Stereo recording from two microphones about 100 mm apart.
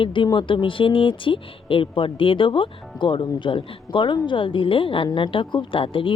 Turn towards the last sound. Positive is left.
turn(degrees=60)  # may be behind; listen again after turning